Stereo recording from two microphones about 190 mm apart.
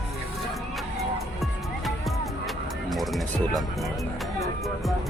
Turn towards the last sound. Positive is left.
turn(degrees=0)  # may be behind; listen again after turning